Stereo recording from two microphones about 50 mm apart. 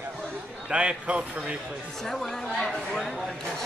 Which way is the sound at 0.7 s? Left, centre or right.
Right.